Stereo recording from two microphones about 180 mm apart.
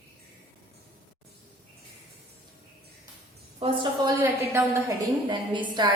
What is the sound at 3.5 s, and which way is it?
Speech, 30° right (ahead or behind).